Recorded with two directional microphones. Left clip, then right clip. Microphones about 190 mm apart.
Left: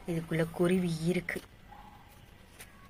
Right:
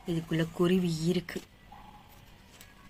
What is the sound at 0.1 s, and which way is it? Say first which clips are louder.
Speech: even; 15° right (ahead or behind).